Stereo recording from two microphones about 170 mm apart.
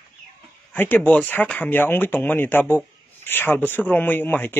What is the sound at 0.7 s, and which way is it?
Speech, 10° left (ahead or behind).